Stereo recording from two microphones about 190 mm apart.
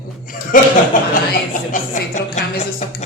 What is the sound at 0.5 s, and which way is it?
A man's voice, 45° left (ahead or behind).